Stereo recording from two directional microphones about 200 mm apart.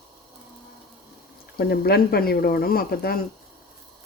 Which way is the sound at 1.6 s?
50° left (ahead or behind).